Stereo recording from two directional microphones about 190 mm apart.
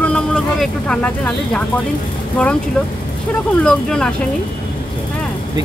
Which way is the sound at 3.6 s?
5° left (ahead or behind).